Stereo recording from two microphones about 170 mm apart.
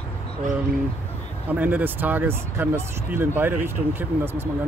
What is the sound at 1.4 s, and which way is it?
Speech, 10° right (ahead or behind).